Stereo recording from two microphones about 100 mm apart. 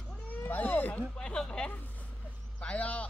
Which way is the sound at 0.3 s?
15° left (ahead or behind).